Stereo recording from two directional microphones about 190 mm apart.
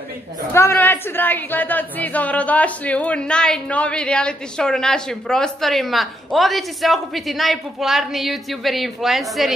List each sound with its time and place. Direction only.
0.5 s a woman's voice: 15° left (ahead or behind)